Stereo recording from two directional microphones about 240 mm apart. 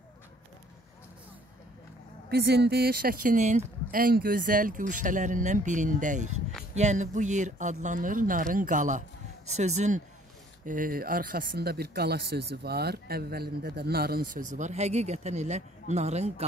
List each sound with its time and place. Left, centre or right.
2.2 s speech: right